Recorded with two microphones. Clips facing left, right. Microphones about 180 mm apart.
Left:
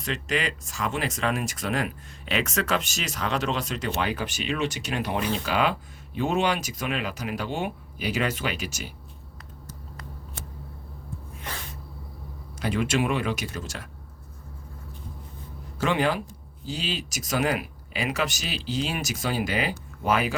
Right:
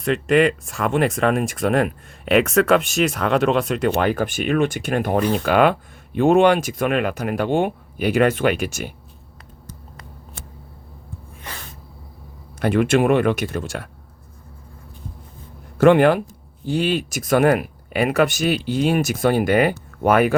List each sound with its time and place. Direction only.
0.0 s speech: 55° right (ahead or behind)
12.5 s speech: 55° right (ahead or behind)
15.8 s speech: 55° right (ahead or behind)